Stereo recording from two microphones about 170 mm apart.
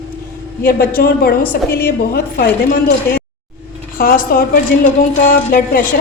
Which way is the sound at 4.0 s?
60° left (ahead or behind).